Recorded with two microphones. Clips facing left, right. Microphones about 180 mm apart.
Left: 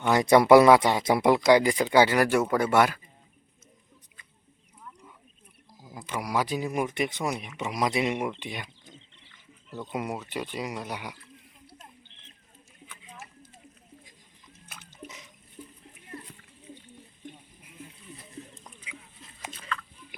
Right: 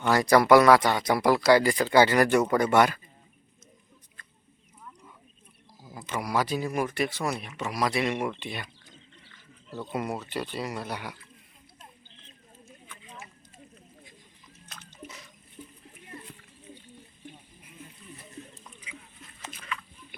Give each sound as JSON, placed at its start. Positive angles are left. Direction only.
{"t": 0.1, "sound": "speech", "side_deg": 20}
{"t": 6.1, "sound": "speech", "side_deg": 10}
{"t": 9.9, "sound": "speech", "side_deg": 10}
{"t": 14.7, "sound": "splash", "side_deg": 10}
{"t": 18.5, "sound": "a sound", "side_deg": 15}